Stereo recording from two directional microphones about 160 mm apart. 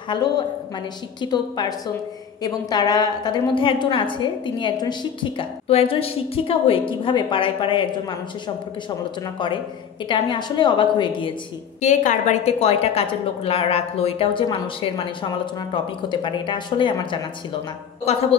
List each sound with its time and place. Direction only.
0.1 s a woman's voice: 30° left (ahead or behind)
10.0 s a woman's voice: 30° left (ahead or behind)
11.8 s a woman's voice: 50° left (ahead or behind); by 17.2 s 30° left (ahead or behind)
18.1 s a woman's voice: 40° left (ahead or behind)